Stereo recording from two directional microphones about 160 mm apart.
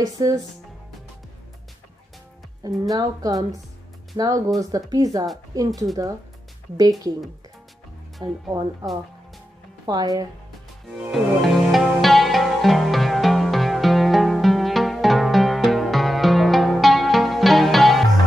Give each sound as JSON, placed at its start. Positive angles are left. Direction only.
{"t": 0.0, "sound": "speech", "side_deg": -20}
{"t": 2.6, "sound": "speech", "side_deg": -20}
{"t": 6.8, "sound": "speech", "side_deg": -25}
{"t": 8.2, "sound": "speech", "side_deg": -25}
{"t": 11.0, "sound": "music", "side_deg": 0}